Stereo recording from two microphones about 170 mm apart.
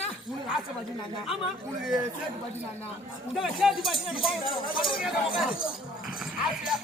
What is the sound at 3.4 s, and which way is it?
Speech, centre (ahead or behind).